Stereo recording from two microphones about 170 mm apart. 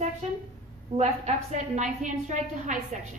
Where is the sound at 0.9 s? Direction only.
40° right (ahead or behind).